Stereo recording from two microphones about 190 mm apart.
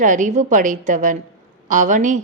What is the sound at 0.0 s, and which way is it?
A woman's voice, 40° right (ahead or behind).